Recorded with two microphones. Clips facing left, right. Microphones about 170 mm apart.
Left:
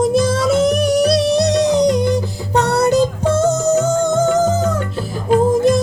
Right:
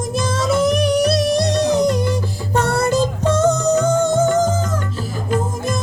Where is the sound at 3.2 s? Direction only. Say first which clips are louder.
Left 1 dB; 10° left (ahead or behind).